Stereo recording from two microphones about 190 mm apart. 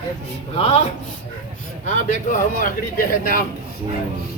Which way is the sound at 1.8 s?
40° left (ahead or behind).